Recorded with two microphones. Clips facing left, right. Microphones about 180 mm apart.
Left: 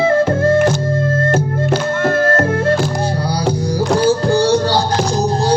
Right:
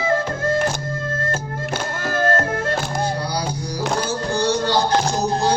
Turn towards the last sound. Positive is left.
turn(degrees=35)  # may be behind; listen again after turning